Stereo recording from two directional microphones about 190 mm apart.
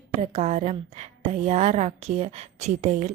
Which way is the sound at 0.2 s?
35° right (ahead or behind).